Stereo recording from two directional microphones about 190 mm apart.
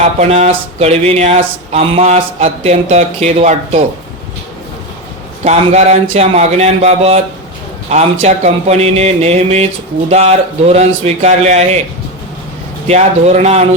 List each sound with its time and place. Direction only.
0.2 s speech: 35° right (ahead or behind)
5.5 s speech: 35° right (ahead or behind)
12.9 s speech: 35° right (ahead or behind)